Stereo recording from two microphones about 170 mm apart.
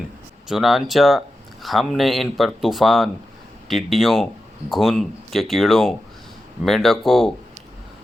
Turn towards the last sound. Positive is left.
turn(degrees=0)  # may be behind; listen again after turning